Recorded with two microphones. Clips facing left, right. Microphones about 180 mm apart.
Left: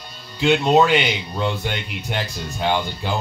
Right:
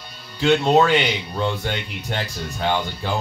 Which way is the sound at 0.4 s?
15° left (ahead or behind).